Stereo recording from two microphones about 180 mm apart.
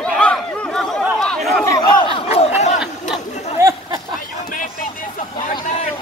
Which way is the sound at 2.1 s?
35° left (ahead or behind).